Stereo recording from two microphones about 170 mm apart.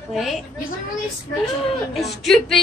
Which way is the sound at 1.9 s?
Centre (ahead or behind).